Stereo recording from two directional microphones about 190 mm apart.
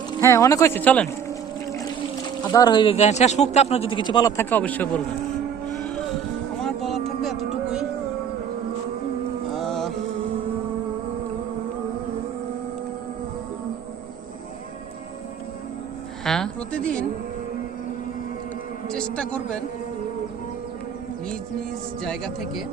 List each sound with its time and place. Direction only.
0.2 s speech: 15° left (ahead or behind)
2.5 s speech: 20° left (ahead or behind)
6.6 s music: centre (ahead or behind)
9.5 s music: centre (ahead or behind)
16.2 s a woman's voice: 5° left (ahead or behind)
18.9 s a man's voice: 5° left (ahead or behind)
22.0 s a man's voice: centre (ahead or behind)